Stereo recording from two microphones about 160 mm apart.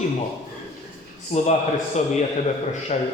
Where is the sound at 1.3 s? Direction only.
40° left (ahead or behind).